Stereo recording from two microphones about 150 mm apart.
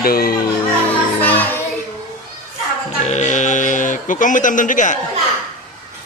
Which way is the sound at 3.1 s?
50° left (ahead or behind).